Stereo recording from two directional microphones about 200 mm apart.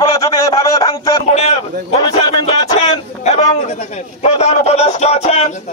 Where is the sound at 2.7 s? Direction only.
30° left (ahead or behind).